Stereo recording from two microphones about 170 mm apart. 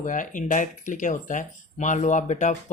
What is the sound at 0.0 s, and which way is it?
Speech, 50° left (ahead or behind).